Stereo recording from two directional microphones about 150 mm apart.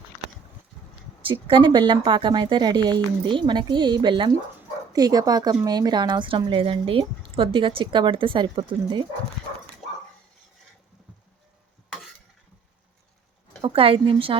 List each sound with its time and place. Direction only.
1.3 s speech: 35° right (ahead or behind)
13.6 s a woman's voice: 40° right (ahead or behind)